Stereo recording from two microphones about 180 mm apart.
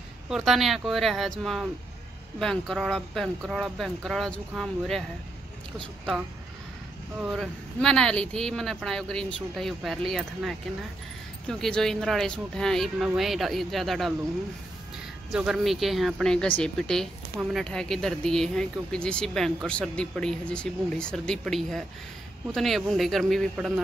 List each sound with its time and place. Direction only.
0.3 s speech: centre (ahead or behind)
7.2 s speech: centre (ahead or behind)
15.3 s speech: centre (ahead or behind)